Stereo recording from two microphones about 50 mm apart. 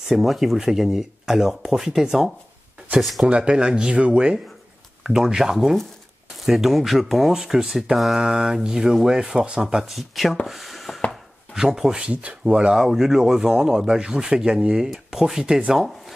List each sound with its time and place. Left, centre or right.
0.1 s speech: centre
3.3 s speech: right
5.0 s speech: centre
10.4 s a sound: centre
11.5 s speech: centre
12.0 s speech: right
12.7 s speech: centre